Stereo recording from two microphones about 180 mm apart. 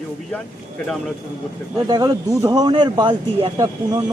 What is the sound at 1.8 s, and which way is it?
Speech, 25° right (ahead or behind).